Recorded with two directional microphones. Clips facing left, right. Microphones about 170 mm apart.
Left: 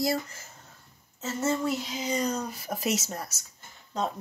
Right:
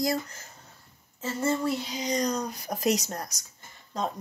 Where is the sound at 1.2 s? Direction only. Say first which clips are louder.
Right 1 dB; centre (ahead or behind).